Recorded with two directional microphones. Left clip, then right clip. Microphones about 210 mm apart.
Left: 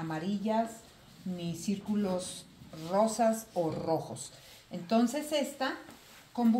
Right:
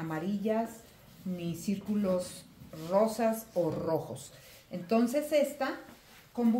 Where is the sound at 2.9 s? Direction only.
25° right (ahead or behind).